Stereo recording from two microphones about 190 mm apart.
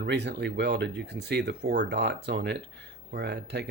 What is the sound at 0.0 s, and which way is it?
Speech, 65° right (ahead or behind).